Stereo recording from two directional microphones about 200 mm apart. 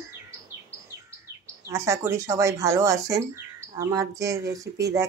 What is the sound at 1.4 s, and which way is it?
Speech, 15° right (ahead or behind).